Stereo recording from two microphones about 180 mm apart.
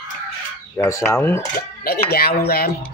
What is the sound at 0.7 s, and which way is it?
Speech, 20° left (ahead or behind).